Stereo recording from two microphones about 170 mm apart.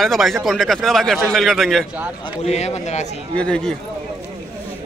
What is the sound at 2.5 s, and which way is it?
Speech, 40° left (ahead or behind).